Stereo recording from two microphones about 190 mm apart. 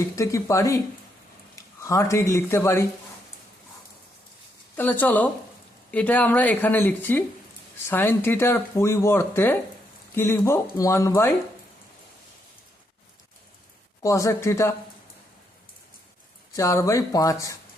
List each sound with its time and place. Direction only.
0.2 s speech: 15° left (ahead or behind)
1.8 s speech: 15° left (ahead or behind)
4.8 s speech: 10° left (ahead or behind)
14.0 s speech: 15° left (ahead or behind)
16.6 s speech: 15° left (ahead or behind)